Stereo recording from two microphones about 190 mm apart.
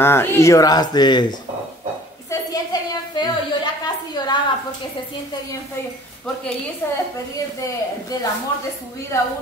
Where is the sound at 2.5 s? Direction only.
20° left (ahead or behind).